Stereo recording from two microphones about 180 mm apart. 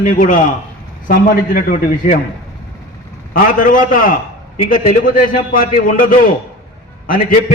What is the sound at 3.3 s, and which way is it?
A man's voice, 50° left (ahead or behind).